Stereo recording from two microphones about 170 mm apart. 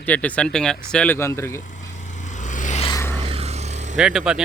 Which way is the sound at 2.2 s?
45° left (ahead or behind).